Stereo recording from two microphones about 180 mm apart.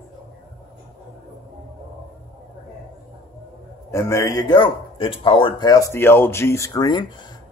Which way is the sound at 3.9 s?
15° left (ahead or behind).